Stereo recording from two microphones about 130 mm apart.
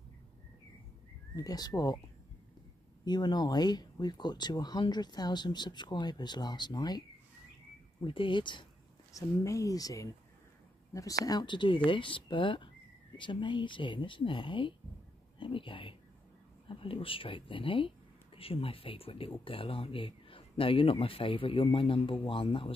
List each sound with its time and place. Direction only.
1.3 s speech: 30° left (ahead or behind)
3.1 s speech: 35° left (ahead or behind)
8.0 s speech: 40° left (ahead or behind)
9.1 s speech: 25° left (ahead or behind); by 22.7 s 45° left (ahead or behind)